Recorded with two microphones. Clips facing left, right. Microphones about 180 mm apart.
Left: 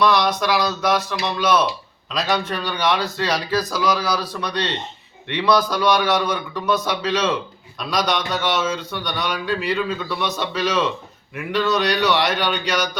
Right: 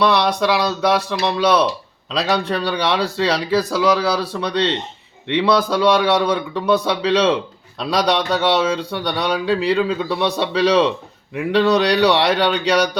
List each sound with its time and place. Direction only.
0.0 s a man's voice: 30° right (ahead or behind)